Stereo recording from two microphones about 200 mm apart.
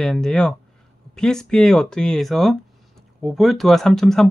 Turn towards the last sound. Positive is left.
turn(degrees=0)  # may be behind; listen again after turning